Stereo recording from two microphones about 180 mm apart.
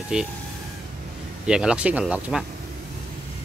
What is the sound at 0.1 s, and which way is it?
Speech, 5° right (ahead or behind).